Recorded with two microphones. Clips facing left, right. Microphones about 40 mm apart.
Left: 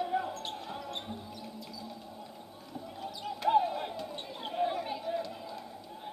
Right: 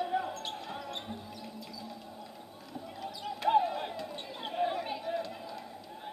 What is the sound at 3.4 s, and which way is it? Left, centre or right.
Basketball bounce, right.